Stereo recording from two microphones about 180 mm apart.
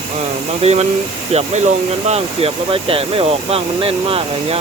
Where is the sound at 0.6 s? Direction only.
35° right (ahead or behind).